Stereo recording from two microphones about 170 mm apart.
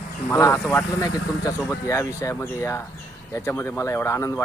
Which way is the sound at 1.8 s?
15° left (ahead or behind).